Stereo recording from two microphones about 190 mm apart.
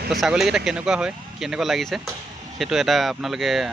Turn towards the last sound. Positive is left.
turn(degrees=0)  # may be behind; listen again after turning